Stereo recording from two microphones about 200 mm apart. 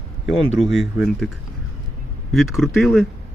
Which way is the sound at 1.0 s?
Centre (ahead or behind).